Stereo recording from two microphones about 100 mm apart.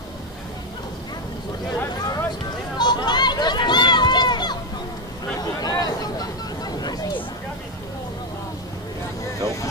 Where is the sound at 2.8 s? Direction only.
45° left (ahead or behind).